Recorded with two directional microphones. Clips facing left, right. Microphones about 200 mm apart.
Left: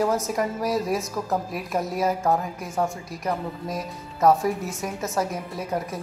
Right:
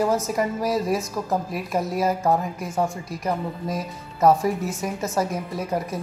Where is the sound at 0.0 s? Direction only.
Centre (ahead or behind).